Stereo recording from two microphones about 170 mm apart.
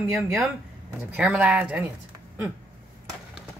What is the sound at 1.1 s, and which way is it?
Speech, 5° right (ahead or behind).